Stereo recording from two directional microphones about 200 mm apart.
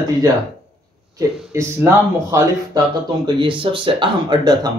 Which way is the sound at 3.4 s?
25° right (ahead or behind).